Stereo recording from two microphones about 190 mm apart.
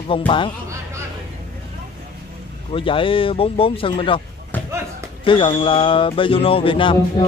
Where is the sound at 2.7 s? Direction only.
25° left (ahead or behind).